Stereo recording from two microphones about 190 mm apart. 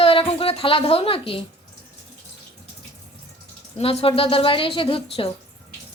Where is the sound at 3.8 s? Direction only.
30° left (ahead or behind).